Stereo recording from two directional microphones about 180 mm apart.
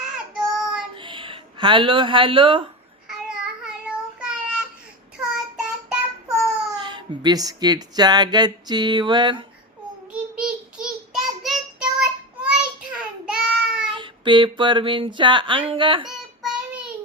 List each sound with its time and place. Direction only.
0.6 s child singing: 5° right (ahead or behind)
0.9 s a sound: 30° right (ahead or behind)
3.1 s child singing: 5° right (ahead or behind)
6.7 s speech: 25° right (ahead or behind)
10.1 s child singing: 5° right (ahead or behind)
13.9 s speech: 25° right (ahead or behind)
16.0 s child singing: 5° right (ahead or behind)